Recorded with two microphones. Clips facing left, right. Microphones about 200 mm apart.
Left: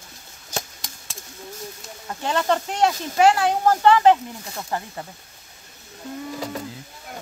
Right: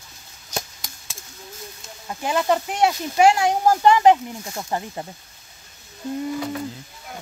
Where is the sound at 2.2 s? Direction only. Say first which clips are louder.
Right 1 dB; 10° right (ahead or behind).